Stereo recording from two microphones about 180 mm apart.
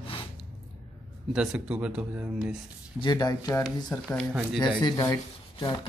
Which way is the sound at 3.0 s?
20° left (ahead or behind).